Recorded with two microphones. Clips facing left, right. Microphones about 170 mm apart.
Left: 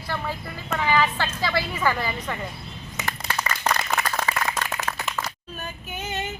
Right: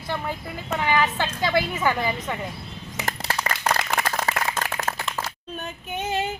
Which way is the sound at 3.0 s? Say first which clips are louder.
Right 2 dB; 35° right (ahead or behind).